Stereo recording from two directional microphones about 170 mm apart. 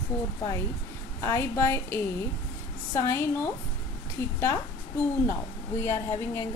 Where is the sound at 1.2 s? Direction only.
15° left (ahead or behind).